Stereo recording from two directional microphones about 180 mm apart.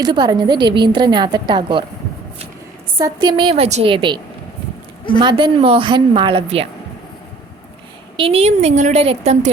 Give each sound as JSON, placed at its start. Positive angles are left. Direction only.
{"t": 0.0, "sound": "a woman's voice", "side_deg": -25}
{"t": 3.0, "sound": "a woman's voice", "side_deg": -25}
{"t": 5.2, "sound": "a woman's voice", "side_deg": -25}
{"t": 8.1, "sound": "a woman's voice", "side_deg": -30}